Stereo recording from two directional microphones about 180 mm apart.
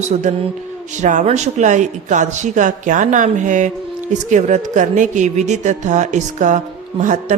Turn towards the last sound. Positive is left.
turn(degrees=-45)  # may be behind; listen again after turning